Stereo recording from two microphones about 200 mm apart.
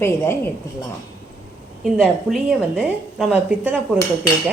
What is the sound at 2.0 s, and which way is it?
A woman's voice, centre (ahead or behind).